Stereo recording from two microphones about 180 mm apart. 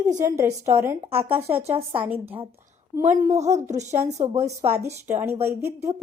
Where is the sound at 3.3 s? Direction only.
40° right (ahead or behind).